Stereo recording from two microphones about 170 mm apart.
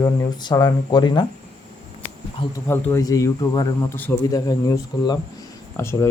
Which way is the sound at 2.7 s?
15° left (ahead or behind).